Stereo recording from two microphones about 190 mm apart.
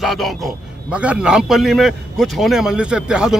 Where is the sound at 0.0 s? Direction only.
Centre (ahead or behind).